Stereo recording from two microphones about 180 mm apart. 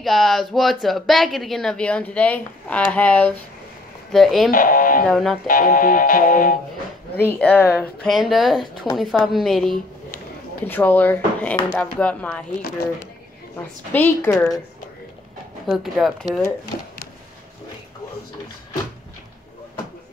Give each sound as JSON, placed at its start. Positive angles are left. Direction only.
{"t": 0.0, "sound": "speech", "side_deg": 0}
{"t": 4.5, "sound": "music", "side_deg": 50}
{"t": 5.0, "sound": "speech", "side_deg": 0}
{"t": 5.5, "sound": "music", "side_deg": 50}
{"t": 7.2, "sound": "speech", "side_deg": 10}
{"t": 13.9, "sound": "speech", "side_deg": 10}
{"t": 15.6, "sound": "speech", "side_deg": 0}